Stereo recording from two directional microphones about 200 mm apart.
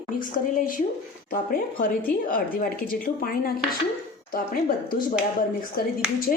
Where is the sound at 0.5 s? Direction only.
45° left (ahead or behind).